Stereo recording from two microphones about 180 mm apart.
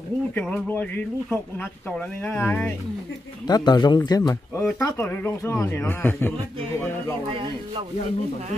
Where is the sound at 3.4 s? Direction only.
25° left (ahead or behind).